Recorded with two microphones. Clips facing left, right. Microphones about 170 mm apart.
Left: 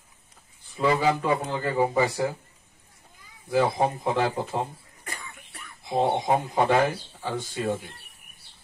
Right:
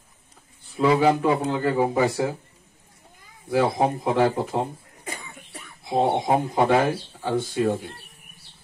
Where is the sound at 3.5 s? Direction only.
55° right (ahead or behind).